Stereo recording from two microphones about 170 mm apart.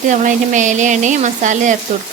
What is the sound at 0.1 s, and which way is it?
Frying, 45° right (ahead or behind).